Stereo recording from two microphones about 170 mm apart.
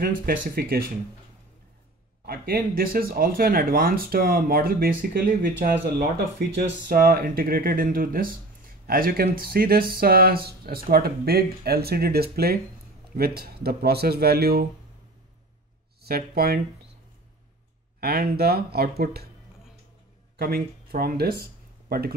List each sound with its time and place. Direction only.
0.0 s speech: 65° right (ahead or behind)
2.2 s speech: 65° right (ahead or behind)
16.0 s speech: 65° right (ahead or behind)
18.0 s speech: 65° right (ahead or behind)
20.3 s speech: 65° right (ahead or behind)